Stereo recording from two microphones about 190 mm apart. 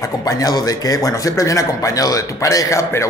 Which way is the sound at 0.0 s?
20° left (ahead or behind).